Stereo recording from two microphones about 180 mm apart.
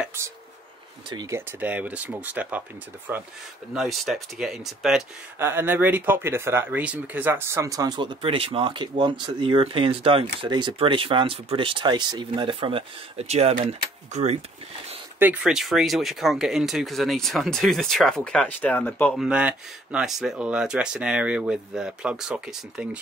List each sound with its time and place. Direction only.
1.1 s speech: 15° right (ahead or behind)
5.4 s speech: 10° right (ahead or behind); by 14.4 s 35° right (ahead or behind)
15.1 s speech: 10° right (ahead or behind); by 19.1 s 10° left (ahead or behind)
19.1 s speech: 5° right (ahead or behind)